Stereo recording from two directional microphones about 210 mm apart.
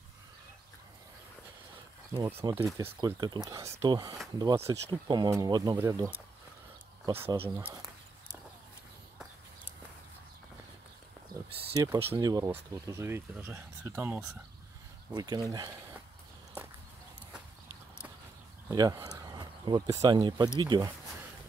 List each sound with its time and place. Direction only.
2.5 s speech: 15° right (ahead or behind)
11.7 s speech: 15° right (ahead or behind)
18.7 s speech: 20° right (ahead or behind)